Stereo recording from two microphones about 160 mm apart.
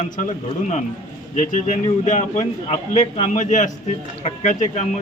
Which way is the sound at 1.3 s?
50° left (ahead or behind).